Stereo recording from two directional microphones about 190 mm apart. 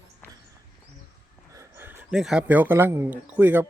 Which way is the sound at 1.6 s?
10° right (ahead or behind).